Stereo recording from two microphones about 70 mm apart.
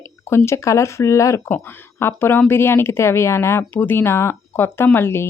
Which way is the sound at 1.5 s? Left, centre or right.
Left.